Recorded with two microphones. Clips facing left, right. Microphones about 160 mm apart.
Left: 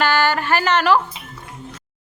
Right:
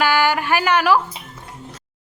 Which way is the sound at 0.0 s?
10° right (ahead or behind).